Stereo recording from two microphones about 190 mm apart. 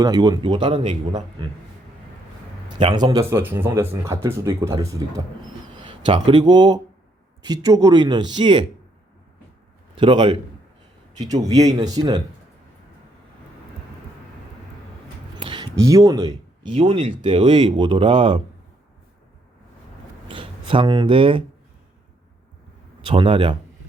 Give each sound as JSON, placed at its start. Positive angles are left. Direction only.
{"t": 0.0, "sound": "speech", "side_deg": -20}
{"t": 2.6, "sound": "a man's voice", "side_deg": -25}
{"t": 9.9, "sound": "speech", "side_deg": -25}
{"t": 15.4, "sound": "a sound", "side_deg": -25}
{"t": 15.8, "sound": "speech", "side_deg": -15}
{"t": 16.7, "sound": "speech", "side_deg": -30}
{"t": 20.2, "sound": "speech", "side_deg": -25}
{"t": 23.0, "sound": "a man's voice", "side_deg": -25}